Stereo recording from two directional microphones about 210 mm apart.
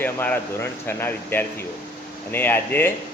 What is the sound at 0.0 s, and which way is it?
Speech, 10° left (ahead or behind).